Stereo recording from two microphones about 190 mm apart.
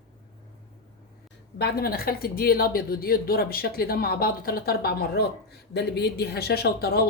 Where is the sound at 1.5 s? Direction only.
55° left (ahead or behind).